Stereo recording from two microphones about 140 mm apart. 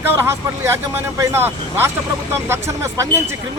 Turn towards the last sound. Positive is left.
turn(degrees=-20)  # may be behind; listen again after turning